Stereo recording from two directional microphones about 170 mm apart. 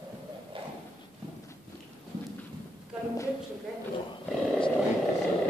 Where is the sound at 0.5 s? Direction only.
30° right (ahead or behind).